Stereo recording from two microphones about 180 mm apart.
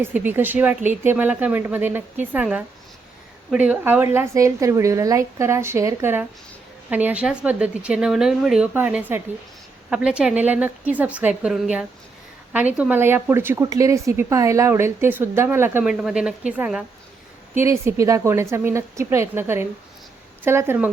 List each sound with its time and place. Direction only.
0.0 s speech: 10° right (ahead or behind)